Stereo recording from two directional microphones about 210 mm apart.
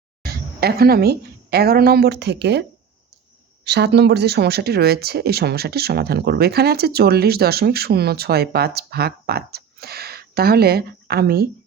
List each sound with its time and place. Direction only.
0.3 s a woman's voice: 50° right (ahead or behind)